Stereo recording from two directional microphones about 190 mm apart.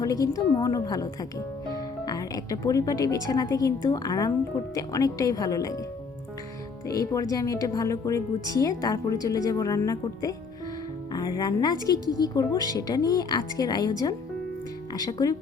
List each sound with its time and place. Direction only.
0.0 s speech: 20° left (ahead or behind)
6.8 s speech: 20° left (ahead or behind)